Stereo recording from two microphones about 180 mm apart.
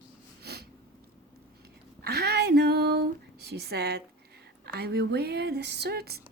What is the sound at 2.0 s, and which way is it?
Female singing, 60° right (ahead or behind).